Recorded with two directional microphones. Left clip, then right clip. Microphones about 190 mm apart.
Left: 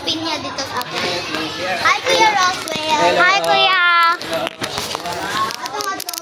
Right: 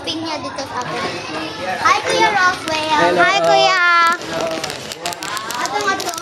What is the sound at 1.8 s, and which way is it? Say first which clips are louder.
Speech: even; 45° right (ahead or behind).